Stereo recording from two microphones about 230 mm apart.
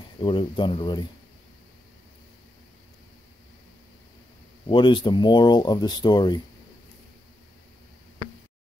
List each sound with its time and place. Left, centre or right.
0.2 s speech: left
4.6 s speech: left